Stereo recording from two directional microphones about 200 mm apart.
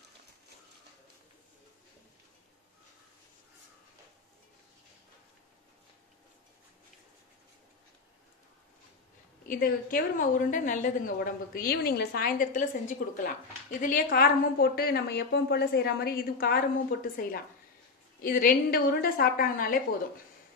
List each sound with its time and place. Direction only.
9.5 s a woman's voice: 45° left (ahead or behind)